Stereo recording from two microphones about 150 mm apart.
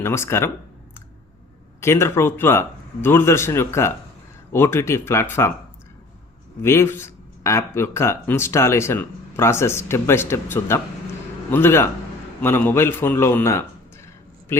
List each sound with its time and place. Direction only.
0.0 s speech: 15° left (ahead or behind)
1.8 s speech: 15° left (ahead or behind)
6.6 s speech: 15° left (ahead or behind)